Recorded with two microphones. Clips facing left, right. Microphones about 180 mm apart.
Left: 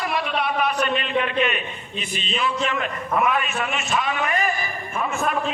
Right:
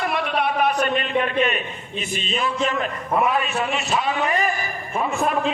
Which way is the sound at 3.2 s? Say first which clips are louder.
Right 1 dB; 35° right (ahead or behind).